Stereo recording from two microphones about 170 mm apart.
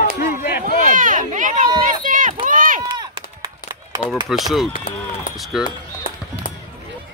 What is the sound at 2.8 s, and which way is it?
Run, 25° right (ahead or behind).